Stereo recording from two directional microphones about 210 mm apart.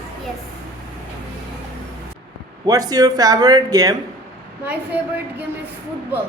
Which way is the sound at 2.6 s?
15° right (ahead or behind).